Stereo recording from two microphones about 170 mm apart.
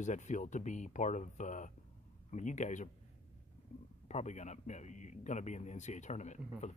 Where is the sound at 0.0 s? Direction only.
45° left (ahead or behind).